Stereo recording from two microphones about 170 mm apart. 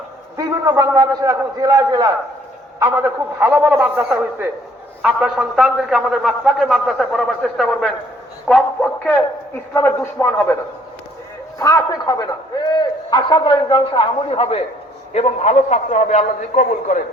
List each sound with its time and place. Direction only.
0.3 s a man's voice: 20° right (ahead or behind); by 10.4 s 15° left (ahead or behind)
11.6 s a man's voice: 20° left (ahead or behind); by 17.0 s 45° left (ahead or behind)